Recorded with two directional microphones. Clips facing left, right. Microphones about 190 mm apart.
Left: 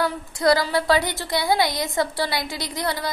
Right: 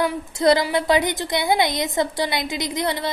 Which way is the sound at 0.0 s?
20° right (ahead or behind).